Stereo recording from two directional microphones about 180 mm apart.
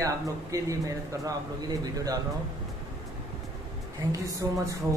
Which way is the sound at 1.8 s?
20° right (ahead or behind).